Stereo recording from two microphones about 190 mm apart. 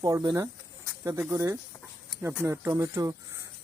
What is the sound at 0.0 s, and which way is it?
Speech, 20° right (ahead or behind).